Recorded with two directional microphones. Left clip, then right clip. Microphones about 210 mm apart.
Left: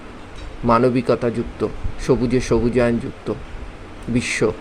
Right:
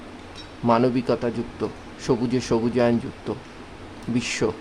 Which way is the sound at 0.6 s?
5° left (ahead or behind).